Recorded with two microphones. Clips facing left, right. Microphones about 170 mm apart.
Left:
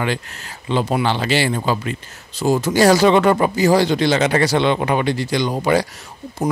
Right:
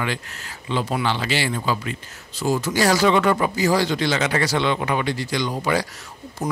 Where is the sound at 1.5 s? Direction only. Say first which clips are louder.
Left 4 dB; 40° left (ahead or behind).